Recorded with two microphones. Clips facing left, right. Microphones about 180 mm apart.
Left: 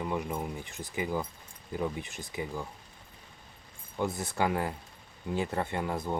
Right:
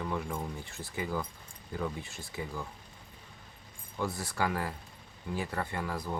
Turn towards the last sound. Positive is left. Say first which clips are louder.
# left 3 dB
turn(degrees=25)  # may be behind; listen again after turning